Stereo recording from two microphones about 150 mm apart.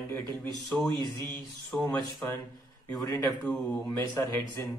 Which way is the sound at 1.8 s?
15° left (ahead or behind).